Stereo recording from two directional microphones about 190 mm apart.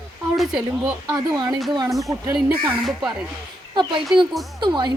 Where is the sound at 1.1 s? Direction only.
20° right (ahead or behind).